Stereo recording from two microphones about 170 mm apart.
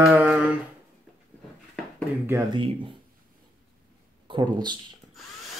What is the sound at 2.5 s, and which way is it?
Speech, 30° right (ahead or behind).